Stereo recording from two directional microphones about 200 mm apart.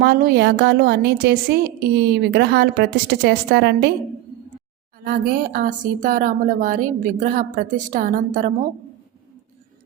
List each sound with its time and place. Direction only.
0.0 s a woman's voice: 50° right (ahead or behind)
5.0 s speech: 45° right (ahead or behind)